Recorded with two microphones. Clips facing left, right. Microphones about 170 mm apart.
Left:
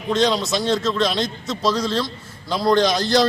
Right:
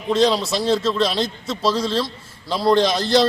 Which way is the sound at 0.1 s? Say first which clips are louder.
Right 1 dB; 5° right (ahead or behind).